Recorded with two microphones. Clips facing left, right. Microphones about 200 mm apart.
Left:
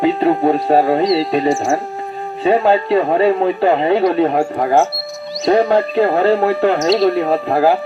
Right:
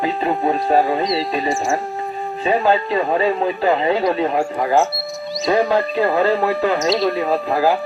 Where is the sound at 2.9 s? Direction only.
60° left (ahead or behind).